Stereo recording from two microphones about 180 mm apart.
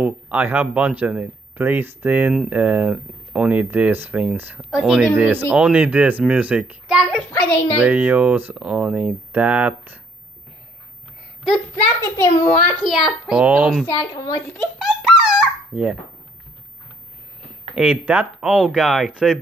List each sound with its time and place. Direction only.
0.0 s speech: 10° right (ahead or behind)
11.7 s a child's voice: 15° left (ahead or behind)
12.8 s speech: centre (ahead or behind)
13.8 s a woman's voice: 20° left (ahead or behind)
14.8 s dog: 5° right (ahead or behind)
17.7 s speech: 5° right (ahead or behind)